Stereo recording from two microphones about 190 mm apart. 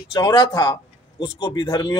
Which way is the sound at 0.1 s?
20° left (ahead or behind).